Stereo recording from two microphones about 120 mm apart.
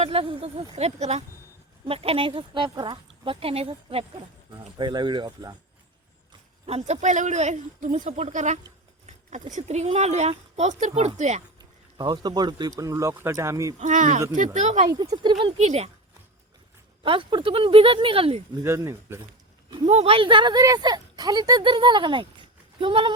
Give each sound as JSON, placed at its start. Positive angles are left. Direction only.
{"t": 0.0, "sound": "speech", "side_deg": -50}
{"t": 0.8, "sound": "speech", "side_deg": -65}
{"t": 1.8, "sound": "speech", "side_deg": -50}
{"t": 4.5, "sound": "speech", "side_deg": -35}
{"t": 6.7, "sound": "speech", "side_deg": -65}
{"t": 11.9, "sound": "speech", "side_deg": -35}
{"t": 13.7, "sound": "speech", "side_deg": -90}
{"t": 14.8, "sound": "speech", "side_deg": -30}
{"t": 15.1, "sound": "speech", "side_deg": -45}
{"t": 15.5, "sound": "speech", "side_deg": -65}
{"t": 17.0, "sound": "speech", "side_deg": -45}
{"t": 18.6, "sound": "speech", "side_deg": -20}
{"t": 19.8, "sound": "speech", "side_deg": -60}